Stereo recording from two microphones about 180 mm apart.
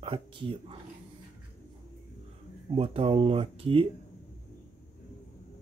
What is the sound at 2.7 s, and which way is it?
Speech, 30° right (ahead or behind).